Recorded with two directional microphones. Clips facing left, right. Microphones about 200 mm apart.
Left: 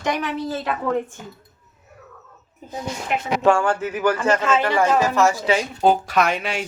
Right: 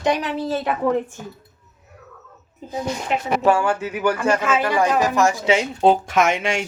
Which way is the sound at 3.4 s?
5° right (ahead or behind).